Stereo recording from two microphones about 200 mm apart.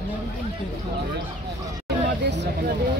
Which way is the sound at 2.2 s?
60° right (ahead or behind).